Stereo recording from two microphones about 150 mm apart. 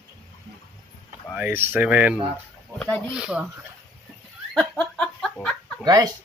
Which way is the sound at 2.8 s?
10° left (ahead or behind).